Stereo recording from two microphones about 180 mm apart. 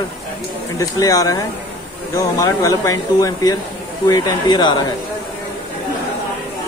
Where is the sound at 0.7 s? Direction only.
20° left (ahead or behind).